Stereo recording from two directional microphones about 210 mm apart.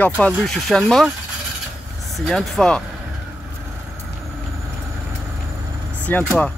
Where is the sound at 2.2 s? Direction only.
Centre (ahead or behind).